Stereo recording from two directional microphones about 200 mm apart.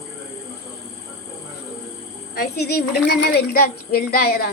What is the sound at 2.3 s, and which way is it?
Speech, 55° left (ahead or behind).